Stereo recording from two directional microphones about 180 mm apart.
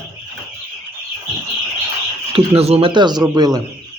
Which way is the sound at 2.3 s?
35° right (ahead or behind).